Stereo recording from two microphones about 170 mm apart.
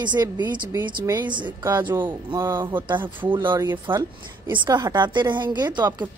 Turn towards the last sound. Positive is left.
turn(degrees=-25)  # may be behind; listen again after turning